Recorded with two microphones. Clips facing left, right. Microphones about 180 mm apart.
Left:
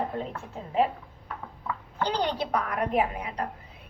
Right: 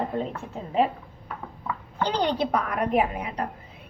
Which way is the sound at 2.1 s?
25° right (ahead or behind).